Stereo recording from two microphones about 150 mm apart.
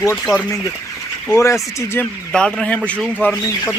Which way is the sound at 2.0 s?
Centre (ahead or behind).